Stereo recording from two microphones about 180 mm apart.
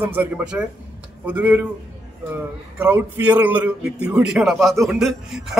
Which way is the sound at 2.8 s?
10° right (ahead or behind).